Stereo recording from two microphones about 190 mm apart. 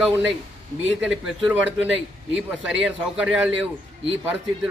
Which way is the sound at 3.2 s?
5° right (ahead or behind).